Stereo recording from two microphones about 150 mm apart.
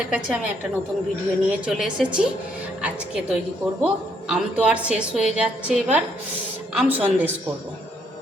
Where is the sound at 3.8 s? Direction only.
5° right (ahead or behind).